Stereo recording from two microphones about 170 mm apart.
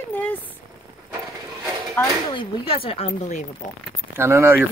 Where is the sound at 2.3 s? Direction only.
30° left (ahead or behind).